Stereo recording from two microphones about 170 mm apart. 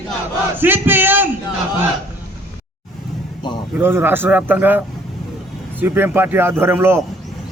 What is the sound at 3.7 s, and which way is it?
A man's voice, 15° right (ahead or behind).